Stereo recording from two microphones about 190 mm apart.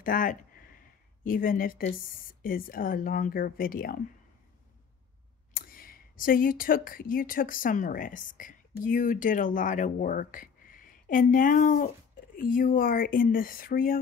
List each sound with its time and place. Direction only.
0.0 s a woman's voice: 50° left (ahead or behind)
5.5 s a woman's voice: 50° left (ahead or behind)